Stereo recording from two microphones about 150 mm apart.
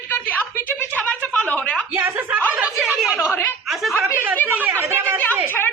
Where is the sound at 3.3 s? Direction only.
15° left (ahead or behind).